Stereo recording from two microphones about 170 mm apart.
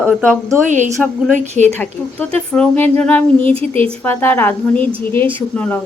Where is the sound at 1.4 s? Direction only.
45° right (ahead or behind).